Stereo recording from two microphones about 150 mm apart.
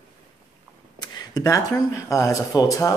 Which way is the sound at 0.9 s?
25° left (ahead or behind).